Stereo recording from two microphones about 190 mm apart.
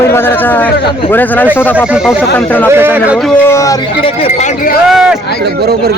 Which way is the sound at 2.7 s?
10° right (ahead or behind).